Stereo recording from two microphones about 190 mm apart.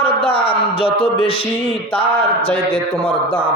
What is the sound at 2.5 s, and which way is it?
Speech, 30° left (ahead or behind).